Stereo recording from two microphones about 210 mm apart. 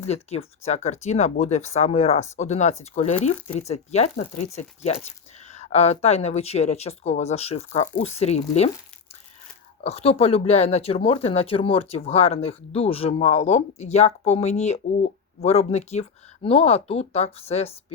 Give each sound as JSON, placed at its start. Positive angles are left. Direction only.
{"t": 0.0, "sound": "speech", "side_deg": 30}
{"t": 9.8, "sound": "speech", "side_deg": 30}